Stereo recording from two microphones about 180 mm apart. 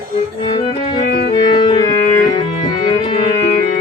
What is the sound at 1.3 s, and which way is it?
Organ, 25° left (ahead or behind).